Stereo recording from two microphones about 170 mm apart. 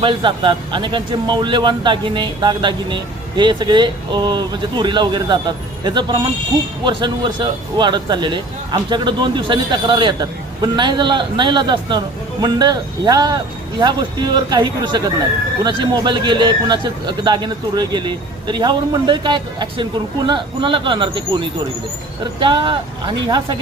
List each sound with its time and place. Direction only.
0.0 s a man's voice: 30° right (ahead or behind)